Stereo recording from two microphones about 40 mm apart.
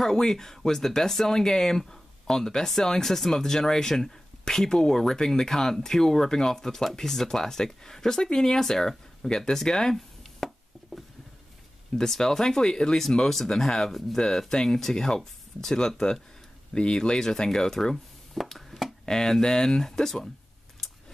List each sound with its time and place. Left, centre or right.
0.0 s speech: centre
12.0 s speech: centre
14.1 s speech: centre
18.5 s a sound: centre
19.0 s speech: centre